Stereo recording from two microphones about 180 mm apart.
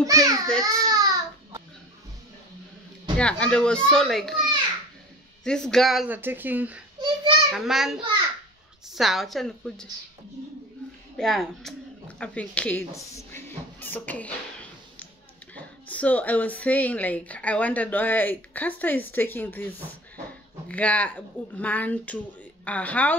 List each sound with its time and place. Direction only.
0.0 s a child's voice: 20° right (ahead or behind)
0.5 s a child's voice: 5° left (ahead or behind)
0.8 s a sound: 20° right (ahead or behind)
3.2 s a child's voice: 5° left (ahead or behind)
11.1 s a child's voice: centre (ahead or behind)
15.5 s speech: 10° left (ahead or behind)